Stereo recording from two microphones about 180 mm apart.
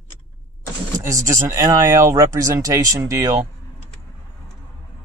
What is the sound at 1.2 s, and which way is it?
Speech, 15° right (ahead or behind).